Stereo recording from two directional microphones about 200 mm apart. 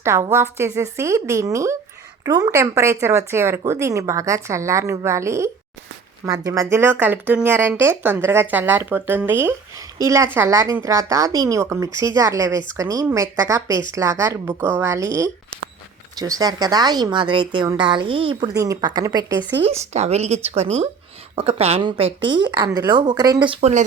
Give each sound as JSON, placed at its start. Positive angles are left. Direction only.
{"t": 0.0, "sound": "speech", "side_deg": -15}
{"t": 19.6, "sound": "speech", "side_deg": -35}
{"t": 23.6, "sound": "speech", "side_deg": -35}